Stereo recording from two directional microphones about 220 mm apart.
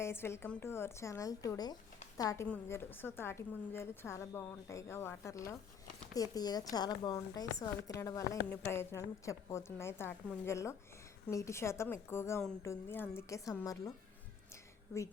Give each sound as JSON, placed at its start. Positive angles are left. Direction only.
{"t": 0.0, "sound": "a woman's voice", "side_deg": 10}